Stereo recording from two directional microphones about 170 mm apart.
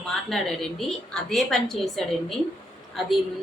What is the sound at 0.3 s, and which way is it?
A woman's voice, centre (ahead or behind).